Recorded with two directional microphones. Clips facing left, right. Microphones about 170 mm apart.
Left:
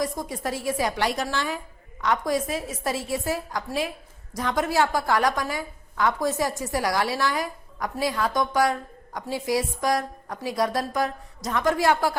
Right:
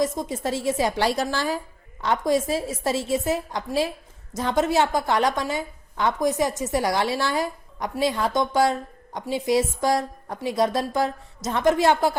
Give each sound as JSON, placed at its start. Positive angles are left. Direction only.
{"t": 0.0, "sound": "a woman's voice", "side_deg": -25}